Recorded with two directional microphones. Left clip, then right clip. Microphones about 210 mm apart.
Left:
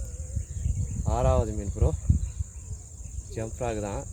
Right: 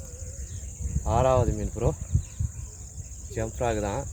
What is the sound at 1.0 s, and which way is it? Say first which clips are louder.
Speech: right 4 dB; 5° right (ahead or behind).